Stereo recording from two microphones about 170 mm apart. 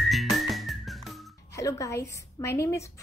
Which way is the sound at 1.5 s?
20° left (ahead or behind).